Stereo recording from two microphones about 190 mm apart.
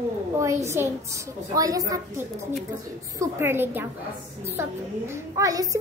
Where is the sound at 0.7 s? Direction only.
15° right (ahead or behind).